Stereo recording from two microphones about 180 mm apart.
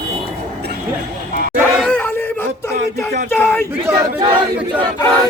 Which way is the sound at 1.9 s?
10° left (ahead or behind).